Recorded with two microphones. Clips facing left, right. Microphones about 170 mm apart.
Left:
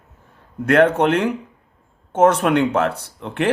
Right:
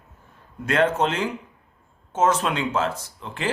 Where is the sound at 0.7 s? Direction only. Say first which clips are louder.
Left 6 dB; 65° left (ahead or behind).